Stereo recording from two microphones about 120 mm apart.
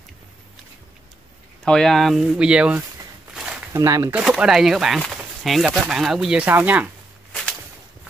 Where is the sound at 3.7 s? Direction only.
25° right (ahead or behind).